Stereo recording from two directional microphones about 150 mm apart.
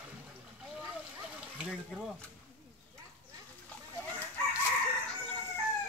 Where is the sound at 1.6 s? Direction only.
Centre (ahead or behind).